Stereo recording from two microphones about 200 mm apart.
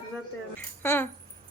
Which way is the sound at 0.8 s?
10° left (ahead or behind).